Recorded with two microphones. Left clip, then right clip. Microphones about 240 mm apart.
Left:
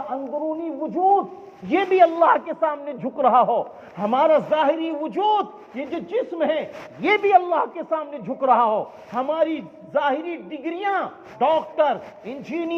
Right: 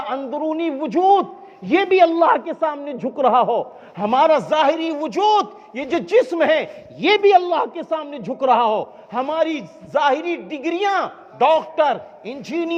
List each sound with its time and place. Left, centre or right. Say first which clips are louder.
0.6 s a man's voice: right 5 dB; right
1.7 s a man's voice: right 2 dB; right